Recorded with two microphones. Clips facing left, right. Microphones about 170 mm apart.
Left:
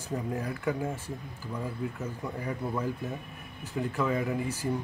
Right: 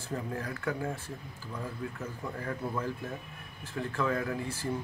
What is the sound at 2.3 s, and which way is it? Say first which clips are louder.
Speech: left 2 dB; 15° left (ahead or behind).